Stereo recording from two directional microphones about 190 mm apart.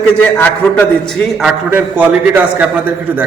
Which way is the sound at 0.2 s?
10° left (ahead or behind).